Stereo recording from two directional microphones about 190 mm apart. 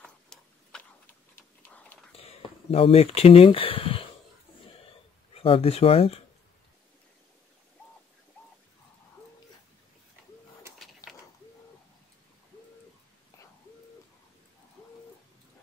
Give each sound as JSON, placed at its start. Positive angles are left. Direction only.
{"t": 0.0, "sound": "a sound", "side_deg": 5}
{"t": 2.7, "sound": "speech", "side_deg": 30}
{"t": 5.3, "sound": "speech", "side_deg": 30}
{"t": 11.0, "sound": "mechanisms", "side_deg": 20}